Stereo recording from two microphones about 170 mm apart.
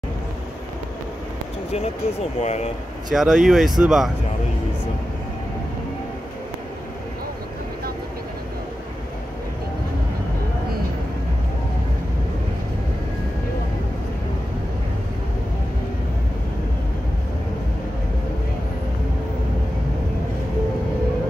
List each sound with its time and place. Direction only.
2.4 s speech: 40° left (ahead or behind)
3.1 s speech: 5° right (ahead or behind)